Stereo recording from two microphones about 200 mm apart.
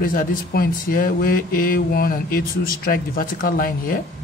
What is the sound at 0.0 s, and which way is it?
Speech, 45° left (ahead or behind).